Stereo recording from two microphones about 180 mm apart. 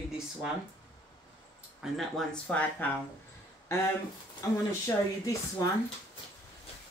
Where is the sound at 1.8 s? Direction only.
Centre (ahead or behind).